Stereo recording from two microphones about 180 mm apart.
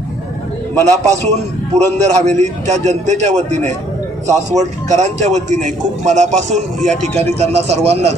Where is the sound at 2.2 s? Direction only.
40° right (ahead or behind).